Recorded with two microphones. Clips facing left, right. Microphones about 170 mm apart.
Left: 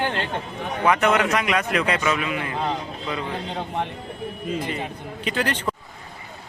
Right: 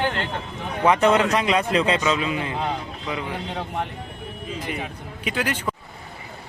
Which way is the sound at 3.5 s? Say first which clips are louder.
Left 1 dB; centre (ahead or behind).